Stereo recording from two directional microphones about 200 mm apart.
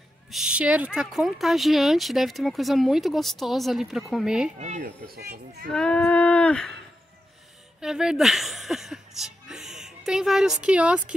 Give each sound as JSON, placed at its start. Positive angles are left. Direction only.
{"t": 0.3, "sound": "speech", "side_deg": -5}
{"t": 4.6, "sound": "speech", "side_deg": -40}
{"t": 5.7, "sound": "speech", "side_deg": 5}
{"t": 7.8, "sound": "speech", "side_deg": -5}